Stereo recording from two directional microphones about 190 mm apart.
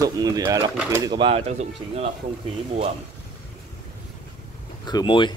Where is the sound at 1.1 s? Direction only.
30° right (ahead or behind).